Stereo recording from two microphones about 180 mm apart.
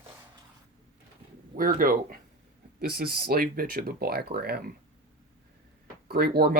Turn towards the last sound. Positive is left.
turn(degrees=-60)  # may be behind; listen again after turning